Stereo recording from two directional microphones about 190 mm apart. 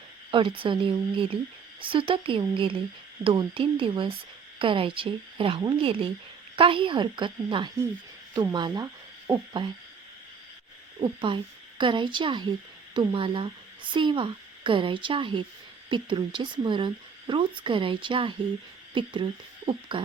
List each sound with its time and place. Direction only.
0.3 s speech: 25° right (ahead or behind)
11.0 s speech: 25° right (ahead or behind)